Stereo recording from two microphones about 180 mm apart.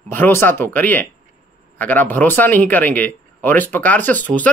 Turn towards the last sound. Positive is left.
turn(degrees=10)  # may be behind; listen again after turning